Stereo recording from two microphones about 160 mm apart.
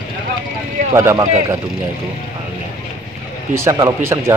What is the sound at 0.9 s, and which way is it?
Speech, 20° right (ahead or behind).